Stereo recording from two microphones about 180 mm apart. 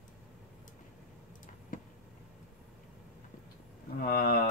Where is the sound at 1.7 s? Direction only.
45° left (ahead or behind).